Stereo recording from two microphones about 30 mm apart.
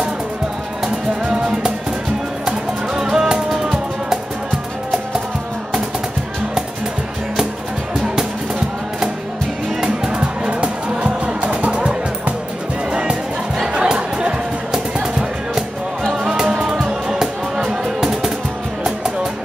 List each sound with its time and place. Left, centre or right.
2.4 s music: right
10.0 s music: right
11.7 s music: right
16.8 s music: centre
17.6 s music: centre